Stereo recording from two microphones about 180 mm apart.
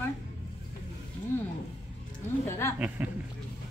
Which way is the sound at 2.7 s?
10° right (ahead or behind).